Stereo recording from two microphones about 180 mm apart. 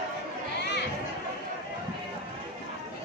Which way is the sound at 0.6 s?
70° left (ahead or behind).